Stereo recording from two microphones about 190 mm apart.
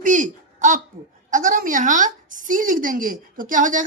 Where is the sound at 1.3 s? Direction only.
45° right (ahead or behind).